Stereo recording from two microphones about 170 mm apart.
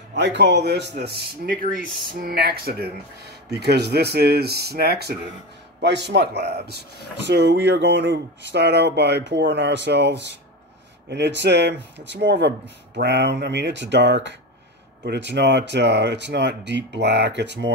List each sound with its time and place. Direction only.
0.1 s speech: 90° right; by 2.9 s 65° right (ahead or behind)
3.4 s speech: 75° right (ahead or behind)
5.8 s speech: 90° right